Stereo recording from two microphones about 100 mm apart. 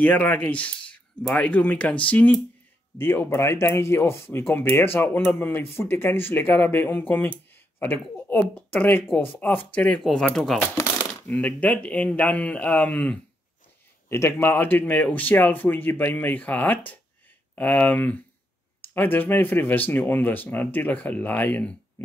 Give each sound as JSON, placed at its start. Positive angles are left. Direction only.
{"t": 0.0, "sound": "speech", "side_deg": 15}
{"t": 11.2, "sound": "speech", "side_deg": 15}
{"t": 14.0, "sound": "speech", "side_deg": 25}